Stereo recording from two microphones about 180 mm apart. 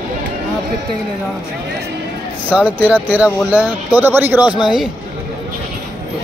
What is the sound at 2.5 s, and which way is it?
Speech, 10° right (ahead or behind).